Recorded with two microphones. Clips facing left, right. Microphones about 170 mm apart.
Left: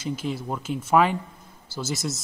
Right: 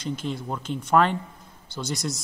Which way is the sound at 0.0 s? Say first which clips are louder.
Left 1 dB; 5° left (ahead or behind).